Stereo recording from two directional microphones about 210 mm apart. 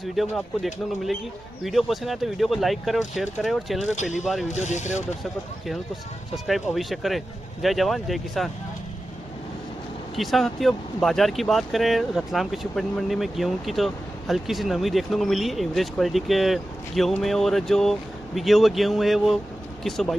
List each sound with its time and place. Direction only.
0.0 s speech: centre (ahead or behind)
3.9 s speech: 35° left (ahead or behind)
4.2 s speech: centre (ahead or behind)
4.6 s speech: 35° left (ahead or behind)
6.3 s speech: centre (ahead or behind)
10.1 s speech: centre (ahead or behind)